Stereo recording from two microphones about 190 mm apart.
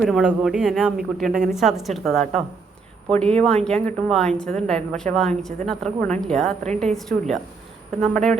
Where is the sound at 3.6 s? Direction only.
5° left (ahead or behind).